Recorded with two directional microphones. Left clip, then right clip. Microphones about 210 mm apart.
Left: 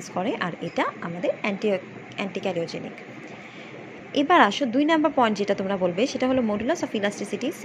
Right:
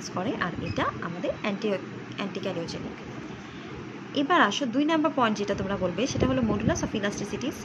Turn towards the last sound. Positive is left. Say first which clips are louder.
# left 4 dB
turn(degrees=20)  # may be behind; listen again after turning